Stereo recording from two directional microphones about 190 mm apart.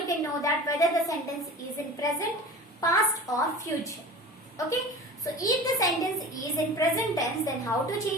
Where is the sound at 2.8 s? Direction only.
20° left (ahead or behind).